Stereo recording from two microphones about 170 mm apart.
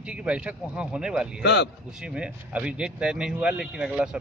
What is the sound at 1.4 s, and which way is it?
Speech, 80° left.